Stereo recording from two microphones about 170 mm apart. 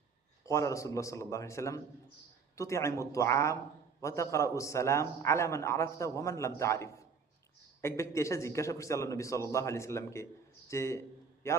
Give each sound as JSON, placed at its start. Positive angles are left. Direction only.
{"t": 0.4, "sound": "a man's voice", "side_deg": 20}